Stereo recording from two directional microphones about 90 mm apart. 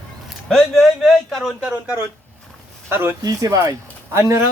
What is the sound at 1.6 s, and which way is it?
A man's voice, 15° right (ahead or behind).